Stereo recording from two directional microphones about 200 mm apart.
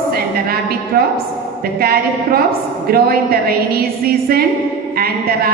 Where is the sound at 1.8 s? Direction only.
50° right (ahead or behind).